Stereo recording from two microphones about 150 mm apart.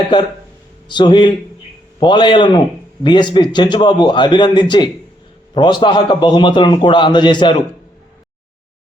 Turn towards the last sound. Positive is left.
turn(degrees=30)  # may be behind; listen again after turning